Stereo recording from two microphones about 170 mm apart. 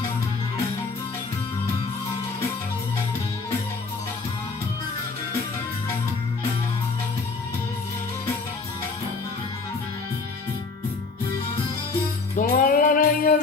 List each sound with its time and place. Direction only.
12.4 s music: 55° left (ahead or behind)